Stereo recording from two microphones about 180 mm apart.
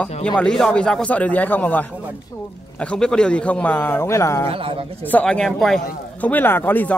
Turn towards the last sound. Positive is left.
turn(degrees=10)  # may be behind; listen again after turning